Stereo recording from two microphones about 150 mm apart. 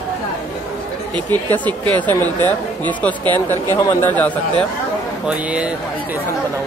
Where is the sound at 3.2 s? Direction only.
25° right (ahead or behind).